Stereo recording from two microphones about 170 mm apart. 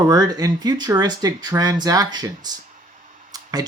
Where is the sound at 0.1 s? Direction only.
25° right (ahead or behind).